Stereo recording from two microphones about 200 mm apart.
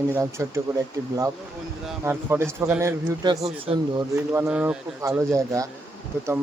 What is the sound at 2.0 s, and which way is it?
Speech, 10° right (ahead or behind).